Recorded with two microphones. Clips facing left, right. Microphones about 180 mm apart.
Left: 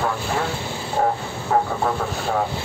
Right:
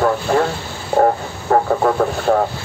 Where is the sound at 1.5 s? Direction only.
55° right (ahead or behind).